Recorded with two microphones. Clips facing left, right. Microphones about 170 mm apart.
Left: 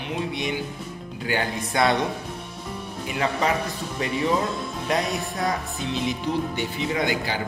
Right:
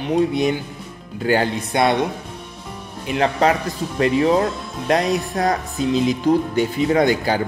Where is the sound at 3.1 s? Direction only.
65° right (ahead or behind).